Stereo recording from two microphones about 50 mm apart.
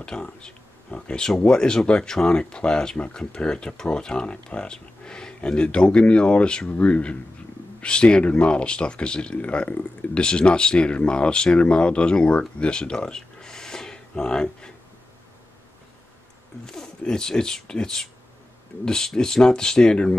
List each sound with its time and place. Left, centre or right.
0.0 s speech: centre
16.6 s speech: centre
18.9 s speech: centre